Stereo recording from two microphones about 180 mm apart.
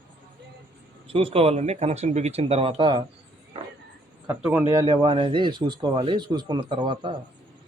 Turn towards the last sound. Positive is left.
turn(degrees=-25)  # may be behind; listen again after turning